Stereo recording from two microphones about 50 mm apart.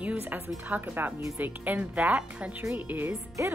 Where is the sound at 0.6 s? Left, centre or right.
Right.